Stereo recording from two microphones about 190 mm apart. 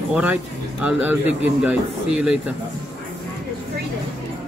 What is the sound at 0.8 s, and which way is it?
Speech, 5° right (ahead or behind).